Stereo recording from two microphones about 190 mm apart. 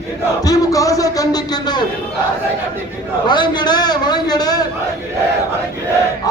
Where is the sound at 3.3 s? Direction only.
25° left (ahead or behind).